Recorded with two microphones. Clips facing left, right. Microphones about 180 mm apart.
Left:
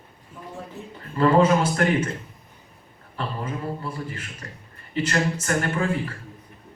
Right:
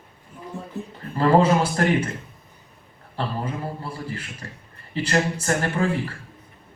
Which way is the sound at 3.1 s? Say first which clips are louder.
Right 2 dB; 30° right (ahead or behind).